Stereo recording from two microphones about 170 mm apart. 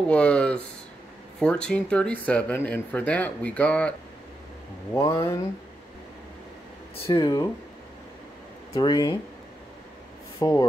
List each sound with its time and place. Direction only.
0.1 s speech: 5° left (ahead or behind)
4.9 s speech: 15° left (ahead or behind)
7.0 s speech: 30° left (ahead or behind)
8.7 s speech: 25° left (ahead or behind)
10.4 s speech: 20° left (ahead or behind)